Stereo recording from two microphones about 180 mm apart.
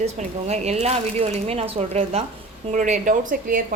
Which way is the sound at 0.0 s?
35° right (ahead or behind).